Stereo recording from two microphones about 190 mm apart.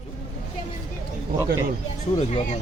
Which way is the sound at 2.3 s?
35° left (ahead or behind).